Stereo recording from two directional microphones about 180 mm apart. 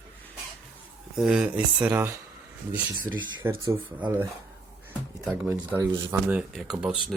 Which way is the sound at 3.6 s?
20° right (ahead or behind).